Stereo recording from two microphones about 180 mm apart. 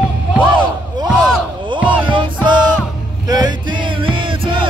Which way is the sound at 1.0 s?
5° right (ahead or behind).